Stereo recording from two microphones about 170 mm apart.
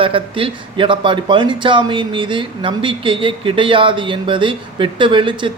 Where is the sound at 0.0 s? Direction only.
30° right (ahead or behind).